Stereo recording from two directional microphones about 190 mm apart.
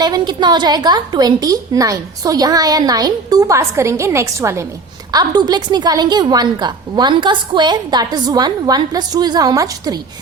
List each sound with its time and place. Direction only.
0.0 s a woman's voice: 20° right (ahead or behind)